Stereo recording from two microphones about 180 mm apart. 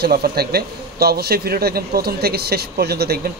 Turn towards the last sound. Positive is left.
turn(degrees=-60)  # may be behind; listen again after turning